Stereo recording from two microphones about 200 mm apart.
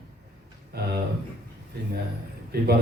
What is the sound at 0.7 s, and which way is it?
Speech, 50° right (ahead or behind).